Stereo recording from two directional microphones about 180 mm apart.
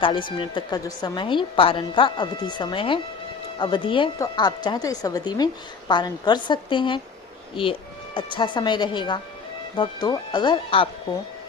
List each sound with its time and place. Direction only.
0.0 s a woman's voice: 25° left (ahead or behind)